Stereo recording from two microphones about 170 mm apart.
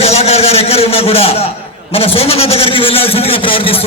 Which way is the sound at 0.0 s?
35° left (ahead or behind).